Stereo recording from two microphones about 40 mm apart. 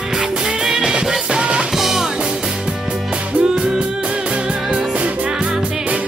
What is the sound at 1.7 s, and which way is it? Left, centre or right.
Music, centre.